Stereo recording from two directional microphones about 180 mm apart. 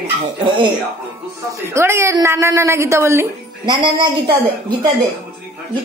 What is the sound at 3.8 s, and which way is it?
Speech, 25° right (ahead or behind).